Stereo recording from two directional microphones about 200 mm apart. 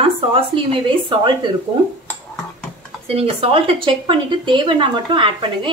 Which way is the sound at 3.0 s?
30° right (ahead or behind).